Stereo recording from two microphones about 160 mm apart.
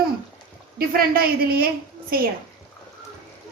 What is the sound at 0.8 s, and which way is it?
A woman's voice, 70° right (ahead or behind).